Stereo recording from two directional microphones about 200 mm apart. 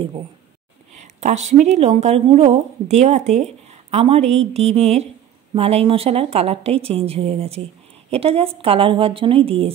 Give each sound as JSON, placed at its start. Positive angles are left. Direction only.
{"t": 0.9, "sound": "a woman's voice", "side_deg": -35}